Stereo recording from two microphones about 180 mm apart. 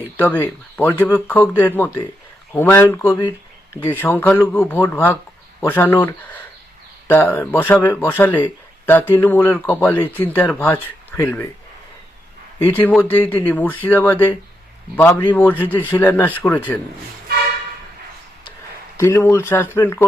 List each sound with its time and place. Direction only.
0.2 s speech: 10° left (ahead or behind)
12.6 s speech: 10° left (ahead or behind)
18.9 s speech: 15° left (ahead or behind)